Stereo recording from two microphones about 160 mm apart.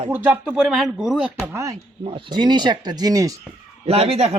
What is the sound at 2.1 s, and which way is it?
Speech, 30° right (ahead or behind).